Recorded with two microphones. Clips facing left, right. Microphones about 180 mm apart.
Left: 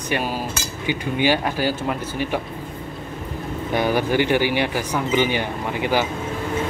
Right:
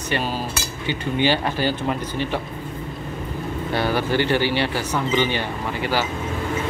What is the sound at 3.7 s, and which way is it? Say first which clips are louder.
Speech: left 2 dB; 15° left (ahead or behind).